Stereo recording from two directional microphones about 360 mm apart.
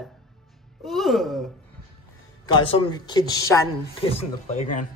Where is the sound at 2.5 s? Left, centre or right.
Centre.